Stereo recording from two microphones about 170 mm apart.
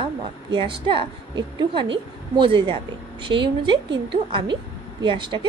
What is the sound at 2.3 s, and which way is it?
A woman's voice, 30° right (ahead or behind).